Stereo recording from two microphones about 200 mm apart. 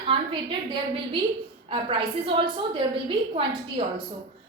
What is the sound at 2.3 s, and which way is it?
A woman's voice, 25° right (ahead or behind).